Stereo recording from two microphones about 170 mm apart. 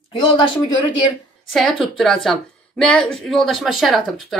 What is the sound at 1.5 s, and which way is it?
A woman's voice, centre (ahead or behind).